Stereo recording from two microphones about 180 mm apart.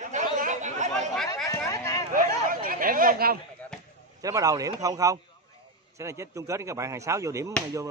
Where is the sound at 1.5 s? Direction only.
15° left (ahead or behind).